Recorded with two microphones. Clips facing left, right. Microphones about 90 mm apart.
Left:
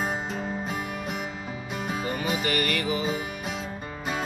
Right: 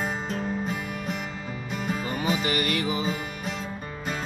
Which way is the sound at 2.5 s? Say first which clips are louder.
Even; 20° right (ahead or behind).